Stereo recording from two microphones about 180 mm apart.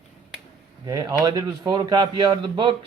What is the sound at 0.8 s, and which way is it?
A man's voice, 20° right (ahead or behind).